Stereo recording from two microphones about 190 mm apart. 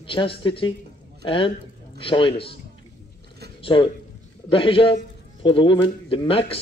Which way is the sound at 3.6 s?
25° left (ahead or behind).